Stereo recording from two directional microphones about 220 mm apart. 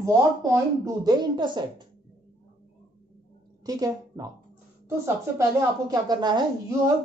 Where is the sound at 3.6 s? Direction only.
15° right (ahead or behind).